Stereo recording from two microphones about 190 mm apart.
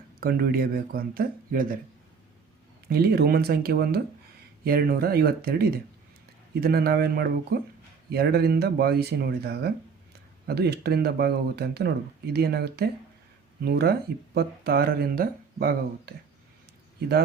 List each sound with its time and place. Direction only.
0.2 s speech: 50° right (ahead or behind)
2.9 s speech: 55° right (ahead or behind)